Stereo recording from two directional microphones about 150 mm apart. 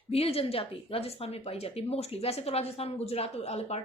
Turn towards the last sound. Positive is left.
turn(degrees=45)  # may be behind; listen again after turning